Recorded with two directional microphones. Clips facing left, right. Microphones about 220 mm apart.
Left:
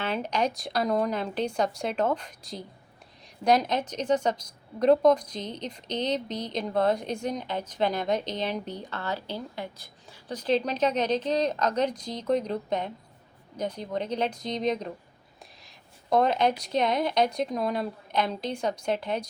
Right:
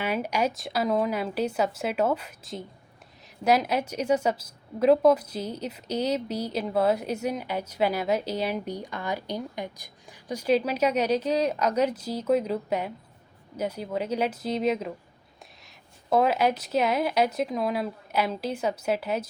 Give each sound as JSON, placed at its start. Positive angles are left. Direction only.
{"t": 0.0, "sound": "a woman's voice", "side_deg": -10}